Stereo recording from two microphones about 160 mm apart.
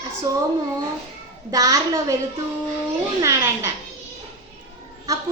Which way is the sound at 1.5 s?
20° right (ahead or behind).